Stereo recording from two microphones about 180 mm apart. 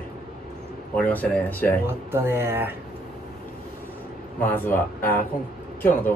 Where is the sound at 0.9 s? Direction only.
10° left (ahead or behind).